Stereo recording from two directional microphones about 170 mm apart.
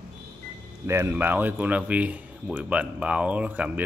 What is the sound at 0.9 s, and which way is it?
Speech, 15° right (ahead or behind).